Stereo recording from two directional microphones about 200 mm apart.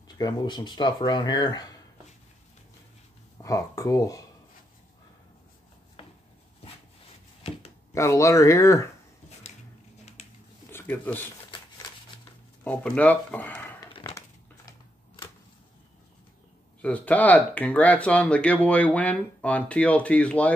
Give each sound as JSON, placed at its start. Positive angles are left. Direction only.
{"t": 0.2, "sound": "speech", "side_deg": 20}
{"t": 3.4, "sound": "speech", "side_deg": 15}
{"t": 7.9, "sound": "speech", "side_deg": 15}
{"t": 10.7, "sound": "speech", "side_deg": 10}
{"t": 12.6, "sound": "speech", "side_deg": 5}
{"t": 16.8, "sound": "speech", "side_deg": 5}